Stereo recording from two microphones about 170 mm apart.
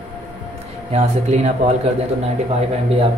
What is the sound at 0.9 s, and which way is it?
Speech, 40° right (ahead or behind).